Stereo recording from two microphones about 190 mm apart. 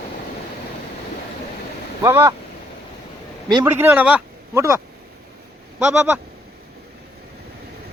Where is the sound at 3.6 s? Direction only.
10° right (ahead or behind).